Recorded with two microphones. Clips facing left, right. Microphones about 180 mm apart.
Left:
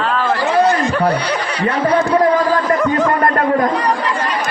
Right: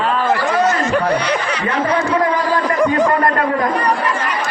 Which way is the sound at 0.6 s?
30° left (ahead or behind).